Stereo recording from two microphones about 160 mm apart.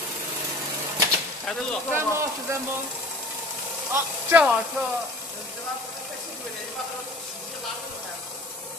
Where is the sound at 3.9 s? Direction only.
10° right (ahead or behind).